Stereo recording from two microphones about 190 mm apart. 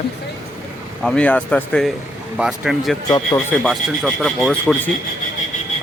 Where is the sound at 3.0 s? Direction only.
20° left (ahead or behind).